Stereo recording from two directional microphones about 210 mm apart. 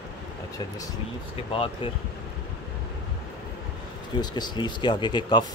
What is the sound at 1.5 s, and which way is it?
Speech, 25° left (ahead or behind).